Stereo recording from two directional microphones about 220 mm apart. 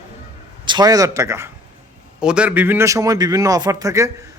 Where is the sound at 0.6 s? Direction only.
20° right (ahead or behind).